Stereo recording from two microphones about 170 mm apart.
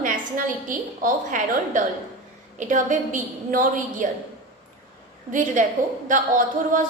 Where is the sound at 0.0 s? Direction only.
50° right (ahead or behind).